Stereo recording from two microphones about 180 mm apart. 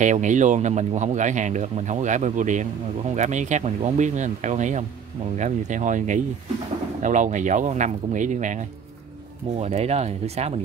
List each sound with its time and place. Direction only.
0.0 s speech: 40° right (ahead or behind)